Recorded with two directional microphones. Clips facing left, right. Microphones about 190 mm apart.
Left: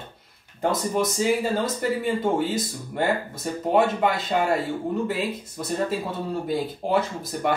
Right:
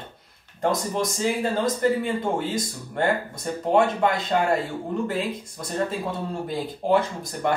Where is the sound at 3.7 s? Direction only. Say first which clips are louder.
Right 1 dB; 5° left (ahead or behind).